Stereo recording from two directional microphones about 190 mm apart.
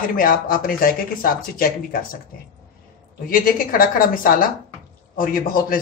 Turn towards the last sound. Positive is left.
turn(degrees=50)  # may be behind; listen again after turning